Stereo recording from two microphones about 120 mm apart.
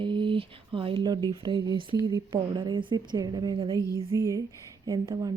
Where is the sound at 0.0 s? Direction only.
40° right (ahead or behind).